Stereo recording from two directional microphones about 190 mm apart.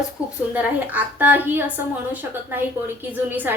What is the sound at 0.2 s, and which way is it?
A woman's voice, 5° right (ahead or behind).